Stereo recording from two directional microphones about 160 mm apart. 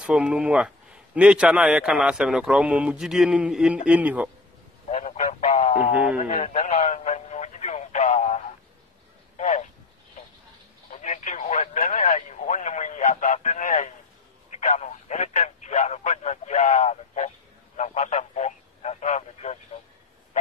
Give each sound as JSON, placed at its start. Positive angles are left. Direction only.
{"t": 0.0, "sound": "a man's voice", "side_deg": -5}
{"t": 4.8, "sound": "goose", "side_deg": 45}
{"t": 6.1, "sound": "radio", "side_deg": 45}
{"t": 9.4, "sound": "a sound", "side_deg": 50}
{"t": 10.9, "sound": "radio", "side_deg": 50}
{"t": 14.6, "sound": "a sound", "side_deg": 45}